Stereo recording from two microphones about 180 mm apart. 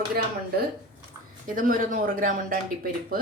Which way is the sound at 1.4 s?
50° right (ahead or behind).